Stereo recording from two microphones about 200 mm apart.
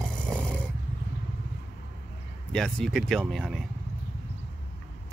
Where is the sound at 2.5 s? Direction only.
Centre (ahead or behind).